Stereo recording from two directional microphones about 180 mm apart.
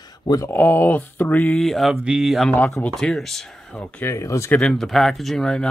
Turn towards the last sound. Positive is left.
turn(degrees=5)  # may be behind; listen again after turning